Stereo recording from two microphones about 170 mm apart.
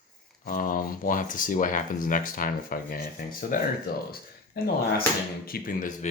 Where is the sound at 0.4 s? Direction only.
55° left (ahead or behind).